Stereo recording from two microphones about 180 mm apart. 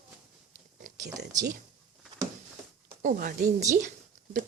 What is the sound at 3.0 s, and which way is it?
Speech, 50° right (ahead or behind).